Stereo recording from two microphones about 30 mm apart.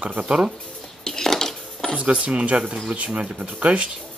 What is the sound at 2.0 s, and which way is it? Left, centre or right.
Speech, right.